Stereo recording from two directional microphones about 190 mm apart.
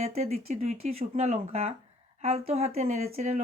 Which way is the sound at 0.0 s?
35° right (ahead or behind).